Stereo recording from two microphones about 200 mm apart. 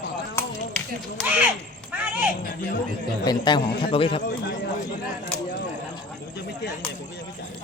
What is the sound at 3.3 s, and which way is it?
Speech, 20° left (ahead or behind).